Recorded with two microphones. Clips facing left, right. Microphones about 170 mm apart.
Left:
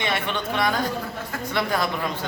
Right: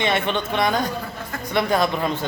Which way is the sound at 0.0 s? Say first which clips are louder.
Right 4 dB; 25° right (ahead or behind).